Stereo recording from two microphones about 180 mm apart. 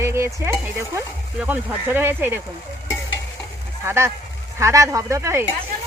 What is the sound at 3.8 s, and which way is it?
Stir, 15° right (ahead or behind).